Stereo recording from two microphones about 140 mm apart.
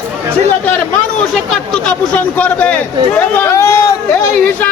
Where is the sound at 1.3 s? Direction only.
5° left (ahead or behind).